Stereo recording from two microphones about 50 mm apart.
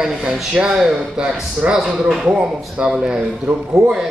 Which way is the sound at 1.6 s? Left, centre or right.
Right.